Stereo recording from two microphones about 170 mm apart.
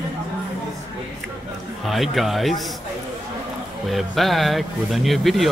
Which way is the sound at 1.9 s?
Centre (ahead or behind).